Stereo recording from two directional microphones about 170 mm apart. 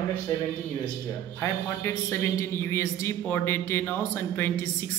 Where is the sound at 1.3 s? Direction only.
15° left (ahead or behind).